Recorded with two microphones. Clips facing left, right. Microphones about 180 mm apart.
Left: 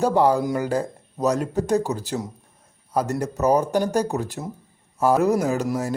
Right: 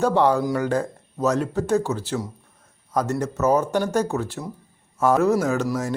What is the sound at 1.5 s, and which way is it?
Speech, 40° left (ahead or behind).